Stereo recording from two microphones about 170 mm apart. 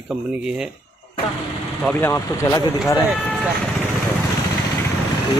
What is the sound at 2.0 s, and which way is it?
Speech, 15° left (ahead or behind).